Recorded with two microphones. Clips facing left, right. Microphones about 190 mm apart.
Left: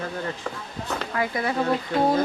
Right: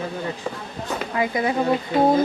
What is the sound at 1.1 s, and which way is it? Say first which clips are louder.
Speech: right 4 dB; 20° right (ahead or behind).